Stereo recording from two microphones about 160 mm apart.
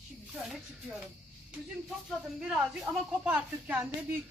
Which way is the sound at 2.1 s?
5° right (ahead or behind).